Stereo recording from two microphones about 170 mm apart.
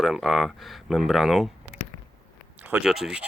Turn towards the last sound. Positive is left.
turn(degrees=-5)  # may be behind; listen again after turning